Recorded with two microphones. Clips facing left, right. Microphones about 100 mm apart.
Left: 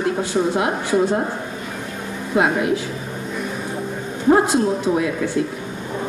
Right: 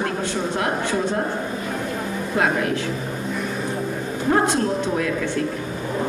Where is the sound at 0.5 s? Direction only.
10° left (ahead or behind).